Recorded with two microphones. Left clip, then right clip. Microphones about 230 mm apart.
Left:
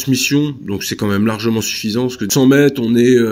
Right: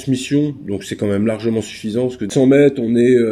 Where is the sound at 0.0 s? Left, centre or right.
Centre.